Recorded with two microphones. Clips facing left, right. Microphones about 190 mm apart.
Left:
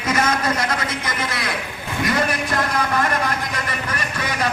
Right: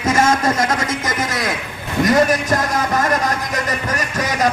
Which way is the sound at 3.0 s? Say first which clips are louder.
Right 3 dB; 45° right (ahead or behind).